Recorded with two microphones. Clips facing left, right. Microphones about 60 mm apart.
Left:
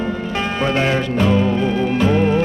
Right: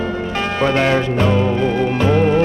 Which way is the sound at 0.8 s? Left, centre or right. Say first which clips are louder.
Right 1 dB; centre.